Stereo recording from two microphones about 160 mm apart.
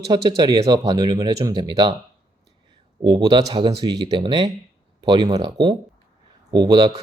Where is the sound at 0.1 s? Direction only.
25° right (ahead or behind).